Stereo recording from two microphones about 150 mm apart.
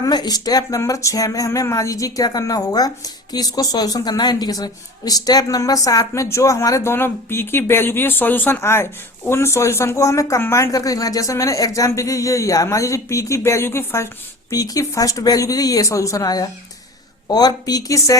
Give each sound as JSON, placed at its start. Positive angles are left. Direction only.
{"t": 0.0, "sound": "speech", "side_deg": 25}